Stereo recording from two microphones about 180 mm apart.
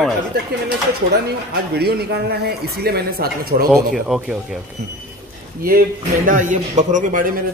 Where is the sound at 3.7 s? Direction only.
Centre (ahead or behind).